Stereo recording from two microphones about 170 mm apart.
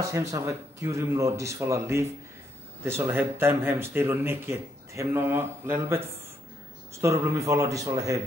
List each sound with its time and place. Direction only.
0.0 s speech: 20° right (ahead or behind)
7.0 s speech: 15° right (ahead or behind)